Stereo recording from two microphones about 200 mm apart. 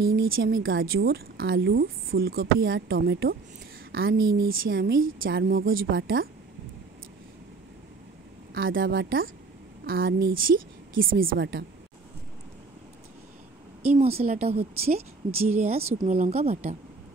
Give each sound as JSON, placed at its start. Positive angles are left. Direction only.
{"t": 0.0, "sound": "a woman's voice", "side_deg": -50}
{"t": 4.4, "sound": "a woman's voice", "side_deg": -50}
{"t": 8.5, "sound": "a woman's voice", "side_deg": -45}
{"t": 13.8, "sound": "a woman's voice", "side_deg": -30}
{"t": 15.8, "sound": "speech", "side_deg": -10}
{"t": 16.1, "sound": "a woman's voice", "side_deg": -30}